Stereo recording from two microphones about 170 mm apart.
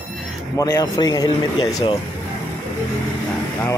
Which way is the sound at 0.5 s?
20° left (ahead or behind).